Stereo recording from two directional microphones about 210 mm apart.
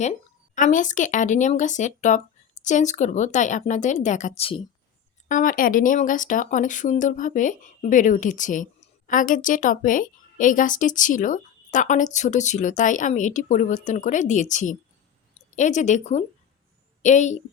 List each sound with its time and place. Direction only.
0.0 s speech: 35° left (ahead or behind)
5.3 s a woman's voice: 40° left (ahead or behind)